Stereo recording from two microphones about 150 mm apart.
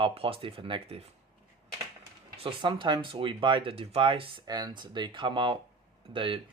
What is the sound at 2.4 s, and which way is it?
Speech, 30° right (ahead or behind).